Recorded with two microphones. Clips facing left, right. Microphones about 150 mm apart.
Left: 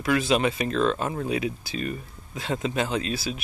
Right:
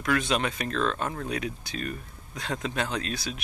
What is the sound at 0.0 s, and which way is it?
Speech, 5° left (ahead or behind).